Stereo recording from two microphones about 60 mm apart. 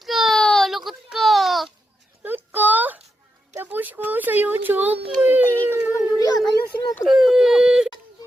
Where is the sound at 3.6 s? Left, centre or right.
Right.